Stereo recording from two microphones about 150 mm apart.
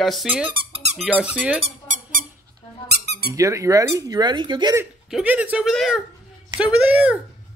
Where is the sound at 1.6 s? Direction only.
60° right (ahead or behind).